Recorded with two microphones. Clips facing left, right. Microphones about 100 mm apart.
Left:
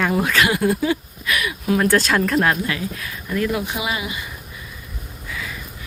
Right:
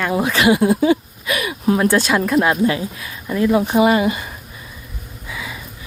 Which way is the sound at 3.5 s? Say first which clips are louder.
Right 10 dB; 40° right (ahead or behind).